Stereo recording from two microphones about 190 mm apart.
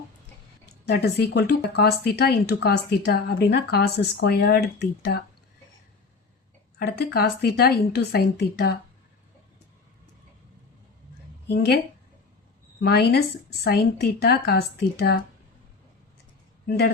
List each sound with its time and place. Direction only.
0.9 s speech: 60° left (ahead or behind)
6.7 s speech: 55° left (ahead or behind)
11.4 s speech: 60° left (ahead or behind)
12.8 s speech: 55° left (ahead or behind)
16.6 s speech: 55° left (ahead or behind)